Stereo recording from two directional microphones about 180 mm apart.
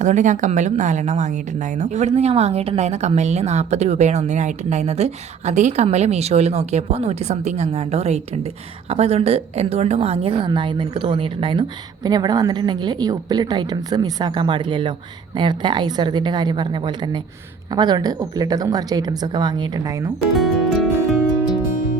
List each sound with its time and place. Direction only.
0.0 s a woman's voice: 45° right (ahead or behind); by 20.1 s 20° right (ahead or behind)
20.3 s music: centre (ahead or behind)